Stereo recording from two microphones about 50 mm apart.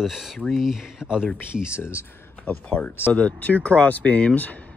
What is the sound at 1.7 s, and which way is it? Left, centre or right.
Speech, left.